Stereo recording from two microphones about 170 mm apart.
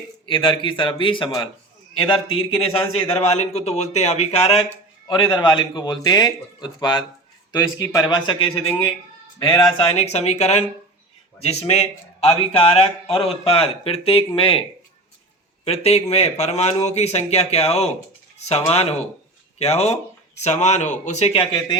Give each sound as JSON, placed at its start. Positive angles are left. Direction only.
{"t": 0.3, "sound": "a man's voice", "side_deg": 30}
{"t": 5.0, "sound": "a man's voice", "side_deg": 25}
{"t": 15.6, "sound": "a man's voice", "side_deg": 40}